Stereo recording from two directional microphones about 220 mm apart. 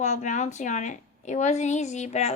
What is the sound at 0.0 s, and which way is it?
Speech, 35° left (ahead or behind).